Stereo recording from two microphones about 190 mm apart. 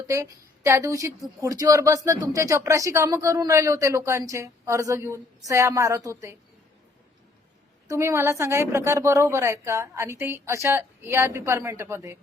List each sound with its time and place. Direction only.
0.1 s a woman's voice: 15° right (ahead or behind)
7.9 s a woman's voice: 15° right (ahead or behind)